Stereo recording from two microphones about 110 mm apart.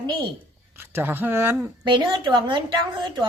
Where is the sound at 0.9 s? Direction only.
20° right (ahead or behind).